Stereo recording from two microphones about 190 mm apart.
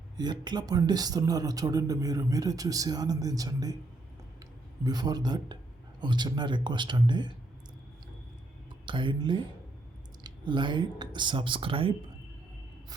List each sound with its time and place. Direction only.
0.2 s speech: 20° right (ahead or behind)
4.8 s speech: 20° right (ahead or behind)
8.9 s speech: 25° right (ahead or behind)